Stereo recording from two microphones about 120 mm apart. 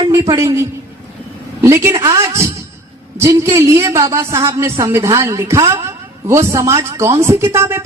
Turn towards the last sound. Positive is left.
turn(degrees=-20)  # may be behind; listen again after turning